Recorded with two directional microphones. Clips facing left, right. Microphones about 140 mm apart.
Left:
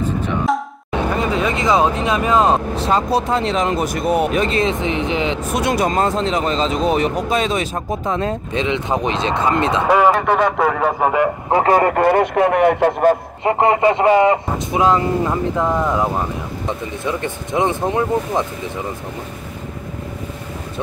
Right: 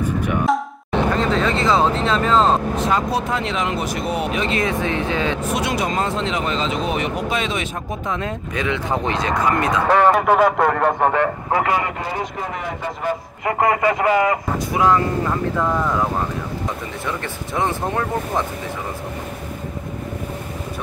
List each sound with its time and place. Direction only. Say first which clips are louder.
0.5 s a sound: even; centre (ahead or behind)
0.9 s speech: even; 10° left (ahead or behind)
2.7 s speech: left 3 dB; 30° left (ahead or behind)
4.6 s a man's voice: left 2 dB; 20° left (ahead or behind)
5.5 s speech: left 3 dB; 45° left (ahead or behind)
8.6 s a man's voice: left 1 dB; 20° left (ahead or behind)
9.8 s speech: even; 5° left (ahead or behind)
11.5 s speech: left 6 dB; 35° left (ahead or behind)
11.8 s speech: left 11 dB; 55° left (ahead or behind)
13.4 s a man's voice: even; 25° left (ahead or behind)